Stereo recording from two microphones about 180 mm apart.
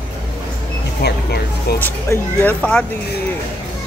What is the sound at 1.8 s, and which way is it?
Speech, 10° left (ahead or behind).